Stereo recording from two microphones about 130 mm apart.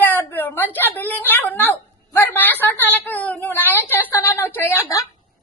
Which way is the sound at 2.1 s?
15° left (ahead or behind).